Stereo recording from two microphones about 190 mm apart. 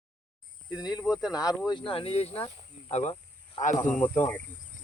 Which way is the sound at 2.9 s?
30° left (ahead or behind).